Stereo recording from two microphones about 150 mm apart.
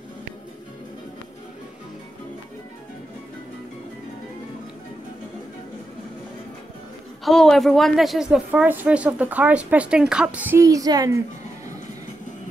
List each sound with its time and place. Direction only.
7.2 s speech: centre (ahead or behind)
10.6 s a woman's voice: 25° right (ahead or behind)